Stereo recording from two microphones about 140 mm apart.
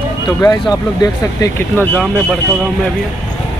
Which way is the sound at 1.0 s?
25° left (ahead or behind).